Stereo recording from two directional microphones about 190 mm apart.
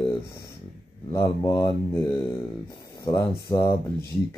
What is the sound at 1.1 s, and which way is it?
Speech, 15° left (ahead or behind).